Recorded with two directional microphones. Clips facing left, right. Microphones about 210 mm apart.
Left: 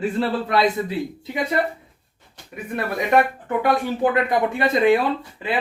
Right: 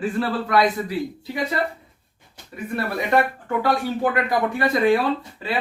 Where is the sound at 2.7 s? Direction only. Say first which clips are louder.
Left 2 dB; 20° left (ahead or behind).